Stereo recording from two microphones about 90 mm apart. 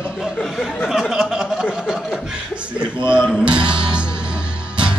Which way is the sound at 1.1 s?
5° right (ahead or behind).